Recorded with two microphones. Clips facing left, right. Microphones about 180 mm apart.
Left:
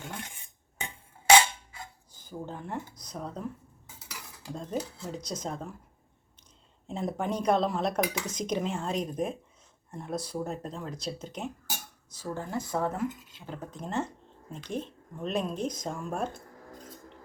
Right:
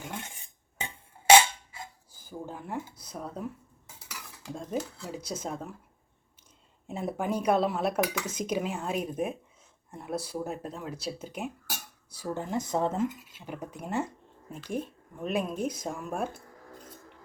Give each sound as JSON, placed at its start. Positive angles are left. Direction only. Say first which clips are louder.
{"t": 2.1, "sound": "speech", "louder": "left 1 dB", "side_deg": -5}
{"t": 4.5, "sound": "speech", "louder": "even", "side_deg": -10}
{"t": 6.8, "sound": "speech", "louder": "even", "side_deg": -5}